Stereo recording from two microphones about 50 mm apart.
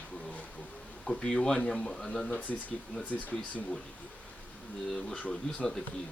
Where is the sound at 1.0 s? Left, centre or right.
Centre.